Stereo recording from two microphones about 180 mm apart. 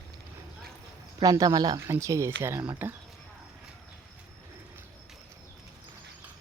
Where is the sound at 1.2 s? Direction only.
20° right (ahead or behind).